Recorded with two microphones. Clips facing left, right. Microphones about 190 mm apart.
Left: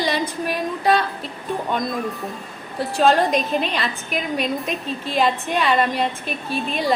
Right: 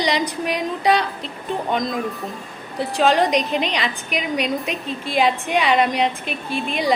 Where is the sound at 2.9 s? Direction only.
15° right (ahead or behind).